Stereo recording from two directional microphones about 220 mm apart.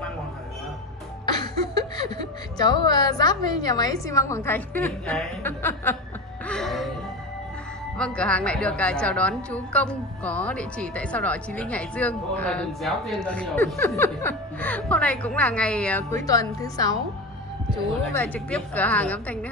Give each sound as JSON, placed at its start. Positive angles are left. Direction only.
{"t": 1.2, "sound": "speech", "side_deg": 20}
{"t": 6.4, "sound": "music", "side_deg": 0}
{"t": 8.0, "sound": "a woman's voice", "side_deg": 5}
{"t": 18.0, "sound": "speech", "side_deg": 5}